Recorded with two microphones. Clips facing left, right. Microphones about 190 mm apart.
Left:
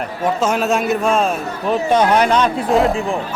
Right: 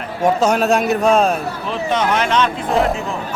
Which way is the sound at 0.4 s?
Centre (ahead or behind).